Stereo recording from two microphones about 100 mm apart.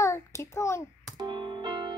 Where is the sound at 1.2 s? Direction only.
50° right (ahead or behind).